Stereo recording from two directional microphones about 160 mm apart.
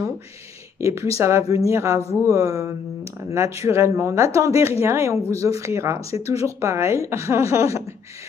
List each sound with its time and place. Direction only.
0.7 s a woman's voice: 20° right (ahead or behind)